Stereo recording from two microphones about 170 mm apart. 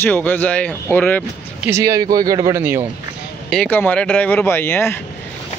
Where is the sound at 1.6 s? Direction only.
15° right (ahead or behind).